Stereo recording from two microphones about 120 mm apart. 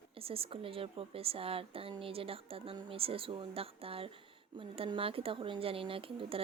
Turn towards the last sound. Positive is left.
turn(degrees=-50)  # may be behind; listen again after turning